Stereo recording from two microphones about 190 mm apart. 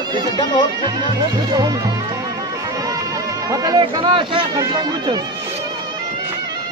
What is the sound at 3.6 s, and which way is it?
Speech, 20° right (ahead or behind).